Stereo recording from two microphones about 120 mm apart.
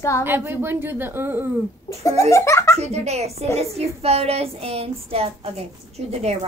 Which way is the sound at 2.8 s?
65° right (ahead or behind).